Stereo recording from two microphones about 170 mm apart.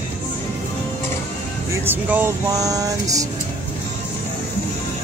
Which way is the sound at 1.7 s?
10° right (ahead or behind).